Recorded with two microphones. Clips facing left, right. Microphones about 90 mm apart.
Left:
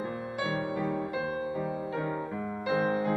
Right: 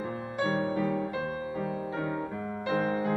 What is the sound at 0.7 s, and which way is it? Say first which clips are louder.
Music: right 1 dB; 5° left (ahead or behind).